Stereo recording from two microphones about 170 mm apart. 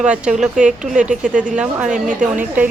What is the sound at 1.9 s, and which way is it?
Speech, 50° right (ahead or behind).